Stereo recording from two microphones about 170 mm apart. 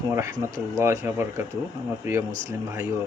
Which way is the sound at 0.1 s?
15° right (ahead or behind).